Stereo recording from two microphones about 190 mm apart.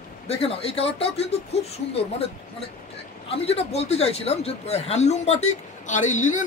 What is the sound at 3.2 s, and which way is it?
A man's voice, 30° left (ahead or behind).